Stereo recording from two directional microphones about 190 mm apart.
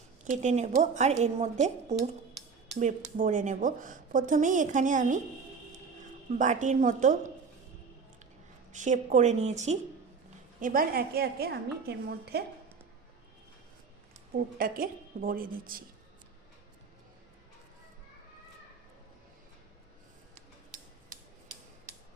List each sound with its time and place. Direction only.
0.3 s a woman's voice: 40° right (ahead or behind)
6.4 s a woman's voice: 40° right (ahead or behind)
8.7 s a woman's voice: 40° right (ahead or behind)
10.6 s a woman's voice: 45° right (ahead or behind)
14.3 s a woman's voice: 50° right (ahead or behind)